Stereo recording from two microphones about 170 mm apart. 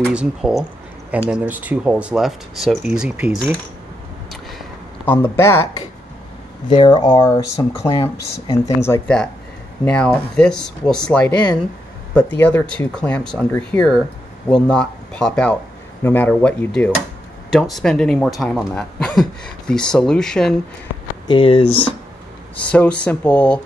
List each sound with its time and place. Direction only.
0.1 s speech: 5° right (ahead or behind)
5.0 s speech: 15° left (ahead or behind)
6.7 s speech: 25° left (ahead or behind); by 20.5 s 5° left (ahead or behind)
21.3 s speech: 30° left (ahead or behind)
22.6 s speech: 5° left (ahead or behind)